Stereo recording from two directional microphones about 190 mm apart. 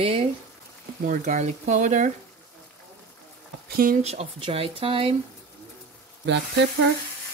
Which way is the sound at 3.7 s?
50° right (ahead or behind).